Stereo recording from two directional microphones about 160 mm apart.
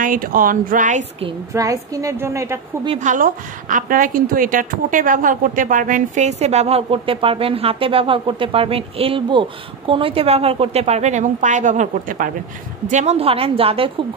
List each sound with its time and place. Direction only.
0.0 s a woman's voice: 60° right (ahead or behind)
1.5 s a woman's voice: 20° right (ahead or behind)
3.0 s a woman's voice: 50° right (ahead or behind); by 13.9 s 35° right (ahead or behind)